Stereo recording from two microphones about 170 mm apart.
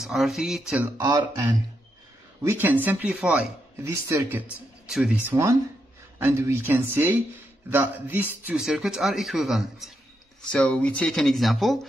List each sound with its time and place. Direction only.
0.0 s speech: centre (ahead or behind)
0.9 s speech: 25° right (ahead or behind)
2.4 s speech: 10° right (ahead or behind)